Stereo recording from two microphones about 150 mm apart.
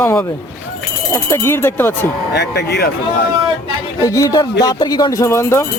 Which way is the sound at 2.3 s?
90° left.